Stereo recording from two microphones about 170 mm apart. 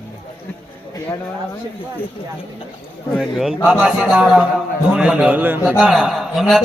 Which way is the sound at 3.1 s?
Centre (ahead or behind).